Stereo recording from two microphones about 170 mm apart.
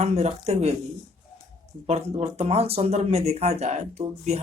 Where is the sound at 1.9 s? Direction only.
40° right (ahead or behind).